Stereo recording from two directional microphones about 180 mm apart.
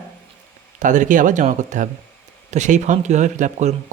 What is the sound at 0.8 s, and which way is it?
Speech, 45° right (ahead or behind).